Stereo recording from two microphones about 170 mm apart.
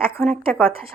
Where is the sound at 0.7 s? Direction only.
35° right (ahead or behind).